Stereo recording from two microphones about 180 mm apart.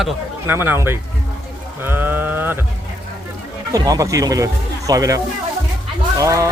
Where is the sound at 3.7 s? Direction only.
20° right (ahead or behind).